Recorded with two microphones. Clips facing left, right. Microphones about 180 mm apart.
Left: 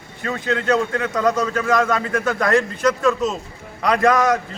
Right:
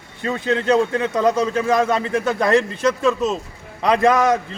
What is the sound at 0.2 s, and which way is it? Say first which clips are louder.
A man's voice: right 2 dB; 30° right (ahead or behind).